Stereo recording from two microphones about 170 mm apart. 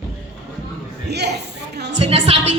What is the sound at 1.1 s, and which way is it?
Speech, 80° right.